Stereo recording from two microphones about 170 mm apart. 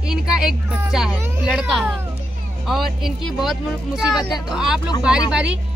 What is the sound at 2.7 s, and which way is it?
Speech, centre (ahead or behind).